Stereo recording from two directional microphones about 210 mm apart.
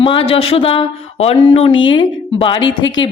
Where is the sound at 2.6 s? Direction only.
65° left (ahead or behind).